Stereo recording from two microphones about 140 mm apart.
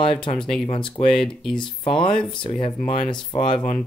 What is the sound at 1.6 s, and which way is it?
Speech, 35° left (ahead or behind).